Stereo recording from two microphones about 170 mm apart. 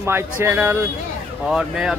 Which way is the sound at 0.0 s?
15° right (ahead or behind).